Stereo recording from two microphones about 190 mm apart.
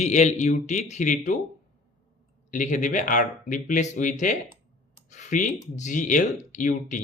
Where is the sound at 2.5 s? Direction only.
40° left (ahead or behind).